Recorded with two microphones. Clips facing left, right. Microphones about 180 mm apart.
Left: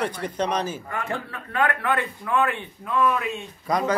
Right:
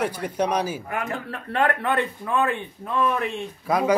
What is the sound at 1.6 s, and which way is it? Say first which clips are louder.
A man's voice: right 1 dB; 25° right (ahead or behind).